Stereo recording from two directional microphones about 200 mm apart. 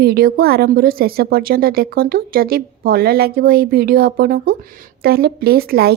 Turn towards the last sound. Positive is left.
turn(degrees=-50)  # may be behind; listen again after turning